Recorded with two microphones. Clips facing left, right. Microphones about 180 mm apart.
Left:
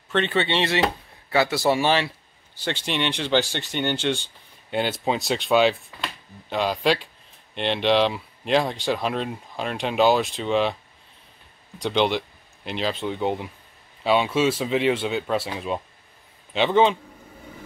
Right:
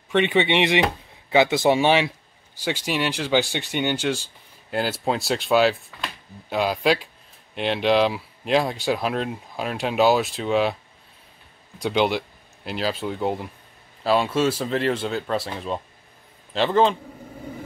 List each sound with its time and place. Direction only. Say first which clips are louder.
0.1 s a man's voice: right 3 dB; 15° right (ahead or behind)
11.8 s speech: right 1 dB; 5° right (ahead or behind)